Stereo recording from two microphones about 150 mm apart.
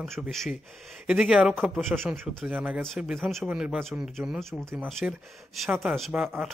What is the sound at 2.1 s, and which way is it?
Speech, 10° right (ahead or behind).